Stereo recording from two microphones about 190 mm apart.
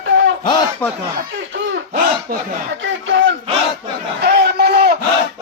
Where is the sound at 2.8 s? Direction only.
75° right (ahead or behind).